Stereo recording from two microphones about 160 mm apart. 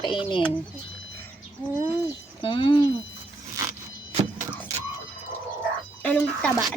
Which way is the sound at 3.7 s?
45° right (ahead or behind).